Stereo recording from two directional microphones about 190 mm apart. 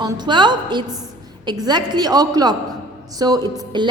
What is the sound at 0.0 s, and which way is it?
A woman's voice, 20° right (ahead or behind).